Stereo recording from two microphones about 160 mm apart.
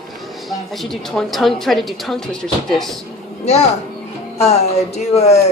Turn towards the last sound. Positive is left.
turn(degrees=45)  # may be behind; listen again after turning